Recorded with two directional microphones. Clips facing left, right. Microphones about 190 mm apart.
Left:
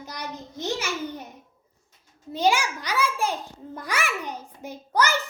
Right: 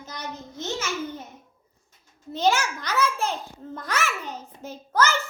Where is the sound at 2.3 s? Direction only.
10° left (ahead or behind).